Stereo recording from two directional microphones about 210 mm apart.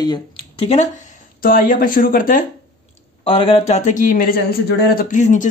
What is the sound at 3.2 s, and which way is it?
Speech, 25° left (ahead or behind).